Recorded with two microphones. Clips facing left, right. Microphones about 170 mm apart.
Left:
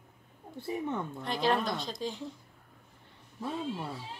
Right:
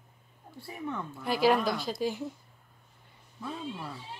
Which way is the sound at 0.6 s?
25° left (ahead or behind).